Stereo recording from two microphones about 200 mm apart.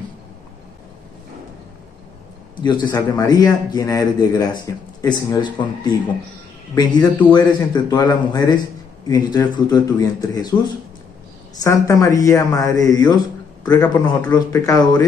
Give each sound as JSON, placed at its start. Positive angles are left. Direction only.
{"t": 2.6, "sound": "speech", "side_deg": 20}
{"t": 11.5, "sound": "speech", "side_deg": 15}
{"t": 14.3, "sound": "speech", "side_deg": 15}